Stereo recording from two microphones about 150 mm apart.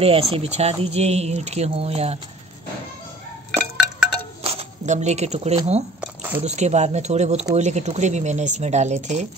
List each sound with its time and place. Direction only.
0.0 s speech: 40° right (ahead or behind)
3.5 s chink: 5° right (ahead or behind)
4.4 s a sound: 40° right (ahead or behind)
5.9 s squish: 15° right (ahead or behind)
6.4 s speech: 50° right (ahead or behind)